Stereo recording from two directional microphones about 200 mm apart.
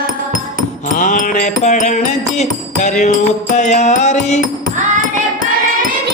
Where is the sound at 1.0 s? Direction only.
40° left (ahead or behind).